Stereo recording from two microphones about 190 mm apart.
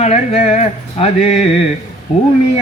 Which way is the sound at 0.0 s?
35° left (ahead or behind).